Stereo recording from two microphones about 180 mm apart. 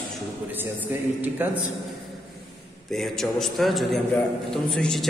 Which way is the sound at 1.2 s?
10° right (ahead or behind).